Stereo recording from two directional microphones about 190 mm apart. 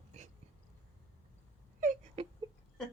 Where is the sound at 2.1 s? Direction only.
30° right (ahead or behind).